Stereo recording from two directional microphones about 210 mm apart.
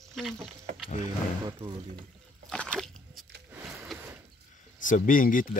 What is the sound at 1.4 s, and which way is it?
Speech, 20° right (ahead or behind).